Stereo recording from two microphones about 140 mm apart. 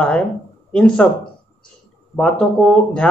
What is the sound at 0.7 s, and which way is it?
Speech, 5° left (ahead or behind).